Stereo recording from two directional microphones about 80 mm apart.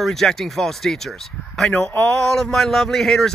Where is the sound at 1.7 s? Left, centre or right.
Centre.